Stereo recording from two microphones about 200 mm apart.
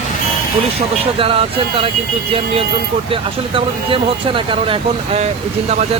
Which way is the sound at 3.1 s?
25° right (ahead or behind).